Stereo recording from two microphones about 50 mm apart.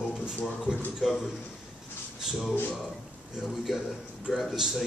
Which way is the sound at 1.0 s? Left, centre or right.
Centre.